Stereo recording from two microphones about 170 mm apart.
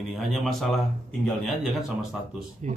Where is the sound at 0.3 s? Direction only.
Centre (ahead or behind).